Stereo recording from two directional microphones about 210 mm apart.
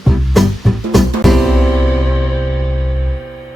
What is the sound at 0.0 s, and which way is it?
Music, centre (ahead or behind).